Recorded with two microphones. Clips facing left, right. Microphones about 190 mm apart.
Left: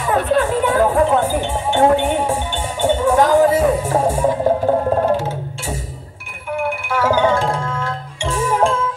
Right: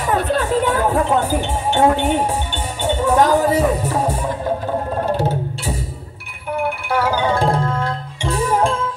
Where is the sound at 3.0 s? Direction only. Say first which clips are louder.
Left 1 dB; 40° right (ahead or behind).